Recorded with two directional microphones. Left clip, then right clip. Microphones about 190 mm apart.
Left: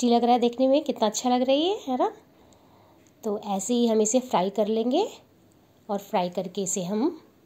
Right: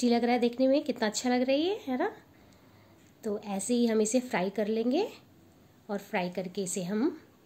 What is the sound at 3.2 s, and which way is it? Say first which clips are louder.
A woman's voice: left 6 dB; 15° left (ahead or behind).